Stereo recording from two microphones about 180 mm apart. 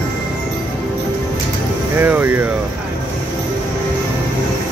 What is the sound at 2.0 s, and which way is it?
Speech, 10° right (ahead or behind).